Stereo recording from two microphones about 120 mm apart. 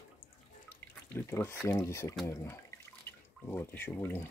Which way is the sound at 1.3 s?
25° left (ahead or behind).